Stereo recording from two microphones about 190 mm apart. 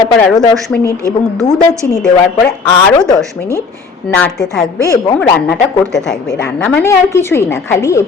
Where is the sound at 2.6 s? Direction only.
20° left (ahead or behind).